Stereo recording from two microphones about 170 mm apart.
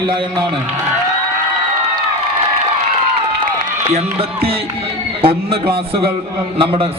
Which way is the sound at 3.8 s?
40° right (ahead or behind).